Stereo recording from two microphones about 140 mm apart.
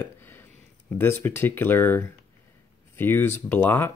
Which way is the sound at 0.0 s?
15° left (ahead or behind).